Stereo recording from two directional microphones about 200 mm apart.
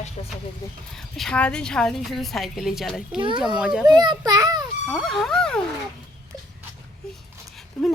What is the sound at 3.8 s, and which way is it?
Speech, 20° right (ahead or behind).